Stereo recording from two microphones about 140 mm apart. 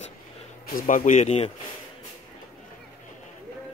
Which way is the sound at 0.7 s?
80° left.